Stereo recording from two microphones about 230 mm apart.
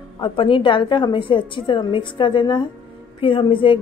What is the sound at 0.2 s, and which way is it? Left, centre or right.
A woman's voice, left.